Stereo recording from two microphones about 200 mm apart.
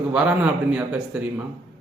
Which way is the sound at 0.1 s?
5° right (ahead or behind).